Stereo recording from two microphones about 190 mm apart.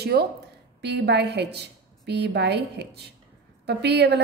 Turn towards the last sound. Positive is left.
turn(degrees=-60)  # may be behind; listen again after turning